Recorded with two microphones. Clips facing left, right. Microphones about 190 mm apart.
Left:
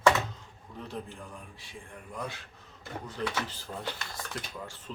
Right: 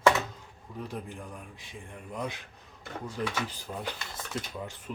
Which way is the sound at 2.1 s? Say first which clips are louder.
Right 3 dB; 20° right (ahead or behind).